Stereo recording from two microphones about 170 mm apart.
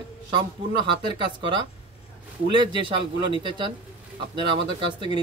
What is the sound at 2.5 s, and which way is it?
Speech, 30° right (ahead or behind).